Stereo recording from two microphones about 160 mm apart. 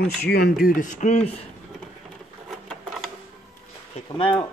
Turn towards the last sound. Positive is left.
turn(degrees=35)  # may be behind; listen again after turning